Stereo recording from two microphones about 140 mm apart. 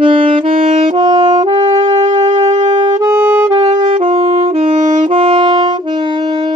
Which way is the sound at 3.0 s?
15° right (ahead or behind).